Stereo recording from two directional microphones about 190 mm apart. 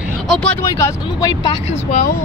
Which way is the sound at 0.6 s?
15° left (ahead or behind).